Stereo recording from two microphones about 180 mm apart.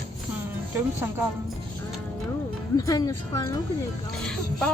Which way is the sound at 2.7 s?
20° left (ahead or behind).